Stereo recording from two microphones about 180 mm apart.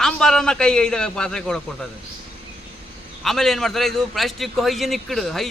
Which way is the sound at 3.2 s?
Centre (ahead or behind).